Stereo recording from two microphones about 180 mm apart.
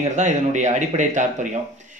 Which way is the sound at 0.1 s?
40° right (ahead or behind).